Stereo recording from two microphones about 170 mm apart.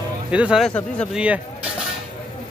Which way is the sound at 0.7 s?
10° left (ahead or behind).